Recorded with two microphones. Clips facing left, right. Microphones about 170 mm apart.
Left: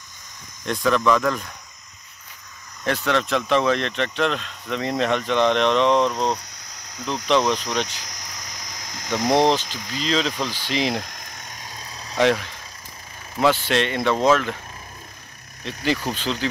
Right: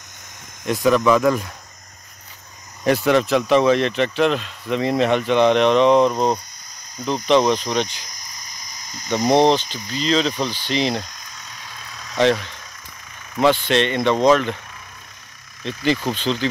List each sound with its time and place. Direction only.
0.9 s speech: 10° right (ahead or behind)
2.8 s speech: 10° right (ahead or behind)
6.7 s a sound: 75° left (ahead or behind)
7.2 s speech: centre (ahead or behind)
8.0 s cricket: 80° left
9.7 s speech: 90° left
9.9 s speech: centre (ahead or behind)
11.1 s vehicle: 50° left (ahead or behind); by 12.2 s 35° left (ahead or behind)
12.2 s speech: 5° left (ahead or behind)
15.6 s speech: 5° left (ahead or behind)